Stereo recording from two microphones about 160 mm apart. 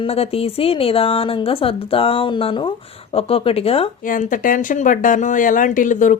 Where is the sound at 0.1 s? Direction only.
40° left (ahead or behind).